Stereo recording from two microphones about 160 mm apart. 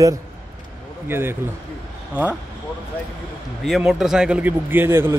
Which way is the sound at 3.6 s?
Centre (ahead or behind).